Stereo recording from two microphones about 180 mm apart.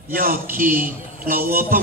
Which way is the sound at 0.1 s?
50° right (ahead or behind).